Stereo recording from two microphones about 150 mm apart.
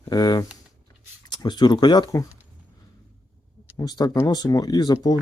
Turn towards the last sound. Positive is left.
turn(degrees=25)  # may be behind; listen again after turning